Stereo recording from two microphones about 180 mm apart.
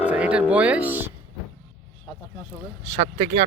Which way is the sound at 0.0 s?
5° right (ahead or behind).